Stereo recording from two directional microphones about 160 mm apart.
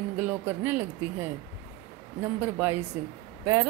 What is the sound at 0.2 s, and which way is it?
Speech, 10° right (ahead or behind).